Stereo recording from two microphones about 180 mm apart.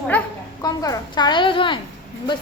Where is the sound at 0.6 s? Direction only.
20° left (ahead or behind).